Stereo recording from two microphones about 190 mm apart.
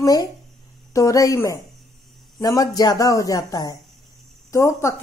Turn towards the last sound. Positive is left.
turn(degrees=15)  # may be behind; listen again after turning